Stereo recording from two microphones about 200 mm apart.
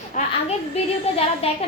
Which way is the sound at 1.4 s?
30° left (ahead or behind).